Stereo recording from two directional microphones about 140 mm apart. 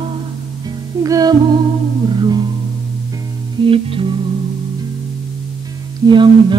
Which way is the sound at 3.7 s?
40° right (ahead or behind).